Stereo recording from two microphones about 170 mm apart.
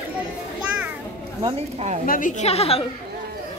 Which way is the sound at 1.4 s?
35° right (ahead or behind).